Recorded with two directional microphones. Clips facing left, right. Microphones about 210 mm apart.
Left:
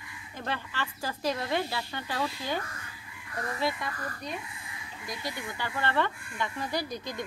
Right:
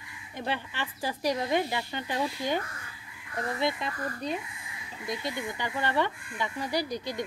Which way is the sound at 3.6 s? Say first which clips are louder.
Right 1 dB; 20° right (ahead or behind).